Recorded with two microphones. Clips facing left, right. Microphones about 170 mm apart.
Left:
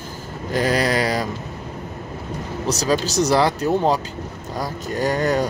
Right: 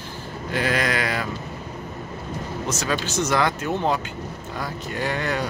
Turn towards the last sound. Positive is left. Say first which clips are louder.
# left 6 dB
turn(degrees=40)  # may be behind; listen again after turning